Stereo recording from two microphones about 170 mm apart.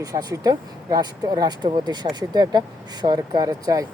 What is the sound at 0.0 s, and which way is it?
Speech, 20° right (ahead or behind).